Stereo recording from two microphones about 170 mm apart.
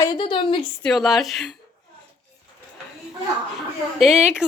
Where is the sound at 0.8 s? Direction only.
Centre (ahead or behind).